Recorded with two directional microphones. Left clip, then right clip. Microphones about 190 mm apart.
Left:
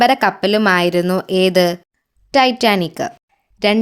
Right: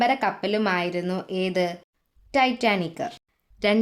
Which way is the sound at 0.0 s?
35° left (ahead or behind).